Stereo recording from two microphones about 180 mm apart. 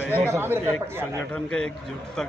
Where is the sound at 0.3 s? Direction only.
10° right (ahead or behind).